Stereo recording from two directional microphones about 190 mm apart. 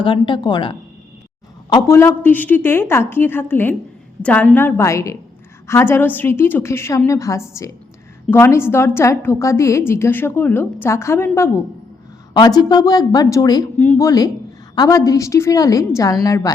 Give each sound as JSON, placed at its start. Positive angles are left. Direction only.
{"t": 0.0, "sound": "a woman's voice", "side_deg": 25}
{"t": 1.7, "sound": "a woman's voice", "side_deg": 15}